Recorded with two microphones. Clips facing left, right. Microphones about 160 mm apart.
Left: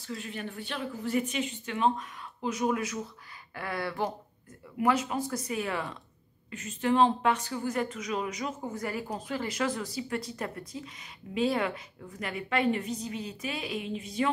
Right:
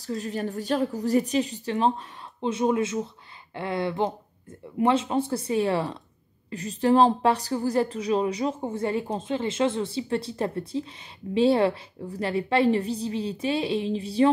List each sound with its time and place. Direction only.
0.0 s a woman's voice: 40° right (ahead or behind)